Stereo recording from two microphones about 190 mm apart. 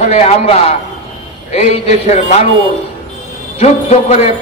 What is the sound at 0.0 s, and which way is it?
Speech, 35° left (ahead or behind).